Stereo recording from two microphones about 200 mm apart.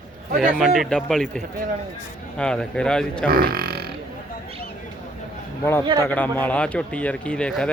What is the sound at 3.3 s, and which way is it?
Speech, 50° right (ahead or behind).